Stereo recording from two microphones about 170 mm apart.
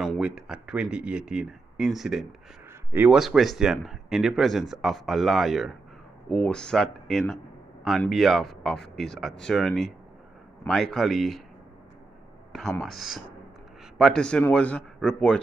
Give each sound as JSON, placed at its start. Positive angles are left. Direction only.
{"t": 0.0, "sound": "speech", "side_deg": -5}
{"t": 12.8, "sound": "speech", "side_deg": 0}